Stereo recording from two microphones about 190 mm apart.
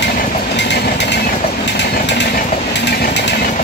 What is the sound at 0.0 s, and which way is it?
Train, 60° left (ahead or behind).